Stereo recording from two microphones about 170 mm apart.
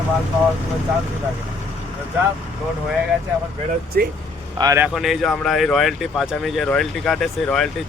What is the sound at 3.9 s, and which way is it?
Speech, 60° right (ahead or behind).